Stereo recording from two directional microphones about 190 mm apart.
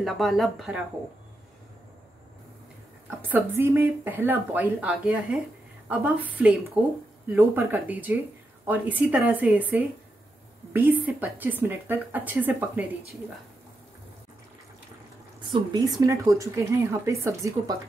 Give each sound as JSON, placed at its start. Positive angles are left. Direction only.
{"t": 0.0, "sound": "speech", "side_deg": 0}
{"t": 3.1, "sound": "speech", "side_deg": -10}
{"t": 15.5, "sound": "speech", "side_deg": -20}